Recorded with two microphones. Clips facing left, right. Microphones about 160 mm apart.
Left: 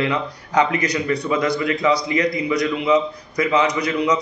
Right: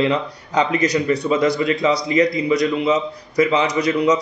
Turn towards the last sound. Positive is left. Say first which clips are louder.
# right 3 dB
turn(degrees=-20)  # may be behind; listen again after turning